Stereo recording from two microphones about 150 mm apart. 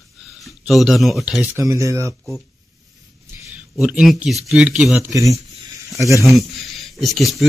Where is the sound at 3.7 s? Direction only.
Centre (ahead or behind).